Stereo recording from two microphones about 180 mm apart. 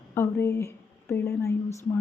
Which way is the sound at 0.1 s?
15° left (ahead or behind).